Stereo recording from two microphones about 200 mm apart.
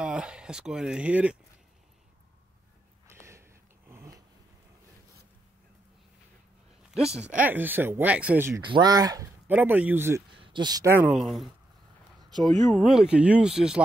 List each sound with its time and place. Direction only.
0.0 s speech: 5° right (ahead or behind)
3.1 s a sound: 15° right (ahead or behind)
7.2 s speech: 5° right (ahead or behind)
9.5 s speech: 10° right (ahead or behind)
10.3 s speech: 25° right (ahead or behind); by 11.5 s centre (ahead or behind)
12.6 s speech: centre (ahead or behind)